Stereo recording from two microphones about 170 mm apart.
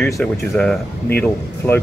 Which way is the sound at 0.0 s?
10° left (ahead or behind).